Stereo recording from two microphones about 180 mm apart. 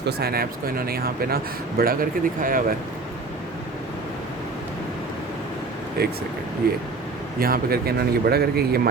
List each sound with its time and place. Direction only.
0.0 s speech: 60° right (ahead or behind)
6.0 s speech: 60° right (ahead or behind)